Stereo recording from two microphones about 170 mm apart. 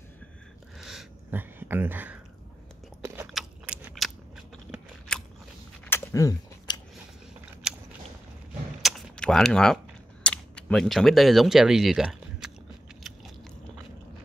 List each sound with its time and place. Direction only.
0.7 s a sound: centre (ahead or behind)
3.7 s scissors: 15° right (ahead or behind)
4.7 s biting: 5° left (ahead or behind)
5.9 s chewing: 15° left (ahead or behind)
7.7 s biting: 5° right (ahead or behind)
8.8 s a sound: 5° left (ahead or behind)
10.2 s speech: 5° left (ahead or behind)